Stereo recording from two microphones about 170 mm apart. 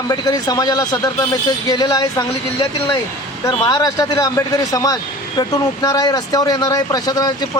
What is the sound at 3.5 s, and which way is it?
Speech, 25° left (ahead or behind).